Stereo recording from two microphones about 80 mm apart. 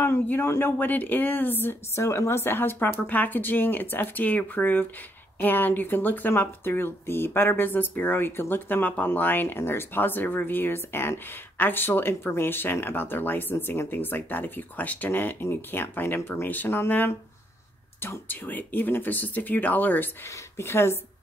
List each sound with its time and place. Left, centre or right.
0.0 s speech: left
20.2 s speech: left